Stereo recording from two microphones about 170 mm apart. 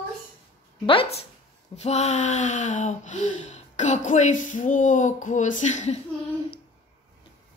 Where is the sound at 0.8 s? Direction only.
30° left (ahead or behind).